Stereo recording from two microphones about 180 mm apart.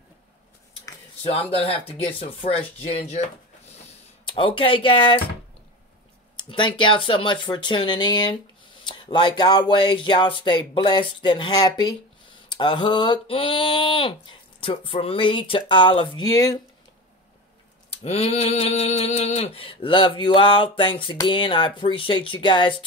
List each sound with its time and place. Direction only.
1.5 s speech: 30° left (ahead or behind)
4.3 s mantra: 30° left (ahead or behind)
6.5 s mantra: 25° left (ahead or behind)
18.0 s mantra: 35° left (ahead or behind)